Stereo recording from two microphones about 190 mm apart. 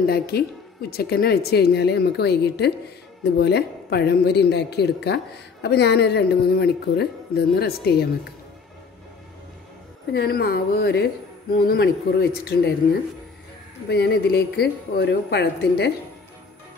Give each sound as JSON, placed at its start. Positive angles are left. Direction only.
{"t": 0.0, "sound": "a woman's voice", "side_deg": 55}
{"t": 10.1, "sound": "speech", "side_deg": 55}
{"t": 13.8, "sound": "a woman's voice", "side_deg": 60}